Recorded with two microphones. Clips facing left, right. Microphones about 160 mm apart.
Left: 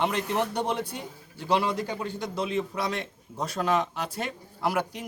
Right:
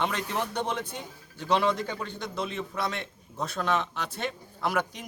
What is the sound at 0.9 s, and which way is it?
Speech, 10° left (ahead or behind).